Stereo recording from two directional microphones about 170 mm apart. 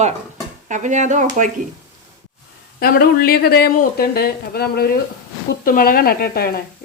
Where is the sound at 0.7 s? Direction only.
45° right (ahead or behind).